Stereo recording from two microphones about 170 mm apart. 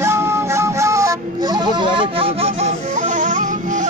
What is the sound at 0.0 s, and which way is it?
Music, 15° right (ahead or behind).